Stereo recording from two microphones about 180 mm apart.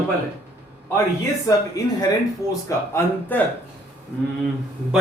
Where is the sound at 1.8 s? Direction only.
20° left (ahead or behind).